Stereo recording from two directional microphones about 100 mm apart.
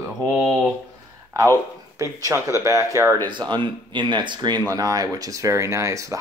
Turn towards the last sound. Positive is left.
turn(degrees=-30)  # may be behind; listen again after turning